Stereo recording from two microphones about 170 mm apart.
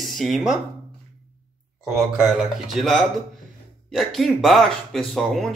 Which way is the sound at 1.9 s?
5° right (ahead or behind).